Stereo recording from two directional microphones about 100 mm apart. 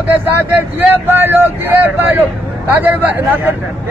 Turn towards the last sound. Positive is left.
turn(degrees=-20)  # may be behind; listen again after turning